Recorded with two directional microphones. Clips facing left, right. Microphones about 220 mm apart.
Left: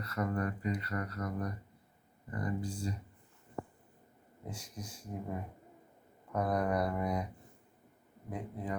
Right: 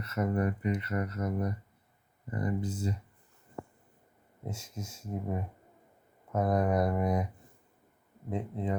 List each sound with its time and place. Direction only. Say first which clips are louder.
0.0 s speech: right 4 dB; 25° right (ahead or behind)
4.4 s speech: right 4 dB; 25° right (ahead or behind)
8.3 s speech: right 6 dB; 25° right (ahead or behind)